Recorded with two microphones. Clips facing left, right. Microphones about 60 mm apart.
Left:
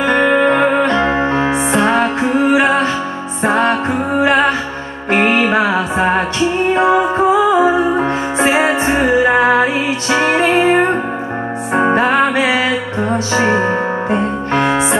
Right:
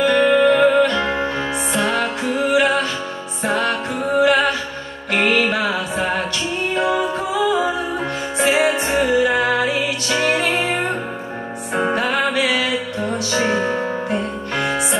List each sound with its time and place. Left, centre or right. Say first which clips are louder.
0.0 s music: left 2 dB; left